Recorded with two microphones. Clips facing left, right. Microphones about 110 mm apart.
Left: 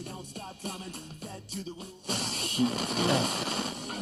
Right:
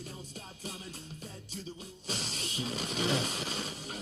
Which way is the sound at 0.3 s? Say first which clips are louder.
Left 7 dB; 55° left (ahead or behind).